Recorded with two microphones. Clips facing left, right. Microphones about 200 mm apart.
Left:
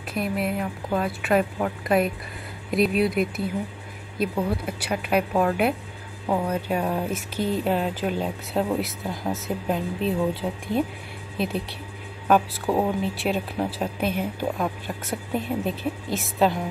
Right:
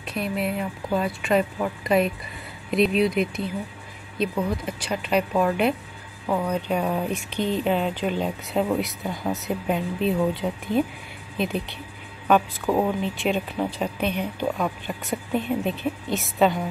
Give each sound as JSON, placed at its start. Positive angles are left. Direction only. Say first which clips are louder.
{"t": 0.1, "sound": "speech", "louder": "even", "side_deg": 0}
{"t": 6.2, "sound": "speech", "louder": "even", "side_deg": 15}
{"t": 6.5, "sound": "speech", "louder": "right 1 dB", "side_deg": 0}